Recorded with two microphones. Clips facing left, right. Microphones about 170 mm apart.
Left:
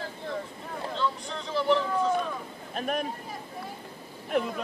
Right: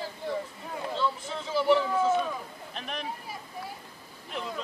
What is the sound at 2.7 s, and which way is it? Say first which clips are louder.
Speech: left 8 dB; 45° left (ahead or behind).